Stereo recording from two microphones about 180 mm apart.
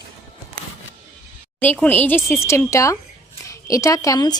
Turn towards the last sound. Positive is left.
turn(degrees=20)  # may be behind; listen again after turning